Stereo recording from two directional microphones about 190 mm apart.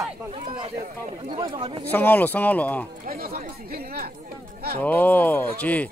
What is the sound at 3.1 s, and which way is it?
Speech, 50° right (ahead or behind).